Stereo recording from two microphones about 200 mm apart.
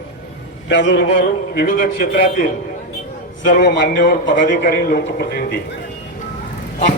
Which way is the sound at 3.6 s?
55° left (ahead or behind).